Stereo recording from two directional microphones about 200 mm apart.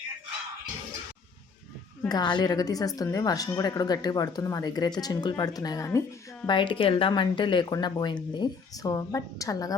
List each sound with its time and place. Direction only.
2.0 s a woman's voice: 20° left (ahead or behind)